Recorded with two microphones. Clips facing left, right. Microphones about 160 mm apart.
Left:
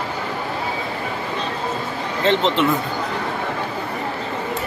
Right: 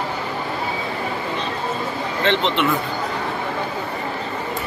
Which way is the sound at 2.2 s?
40° left (ahead or behind).